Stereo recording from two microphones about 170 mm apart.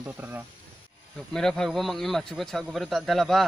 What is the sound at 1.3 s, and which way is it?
Speech, 5° left (ahead or behind).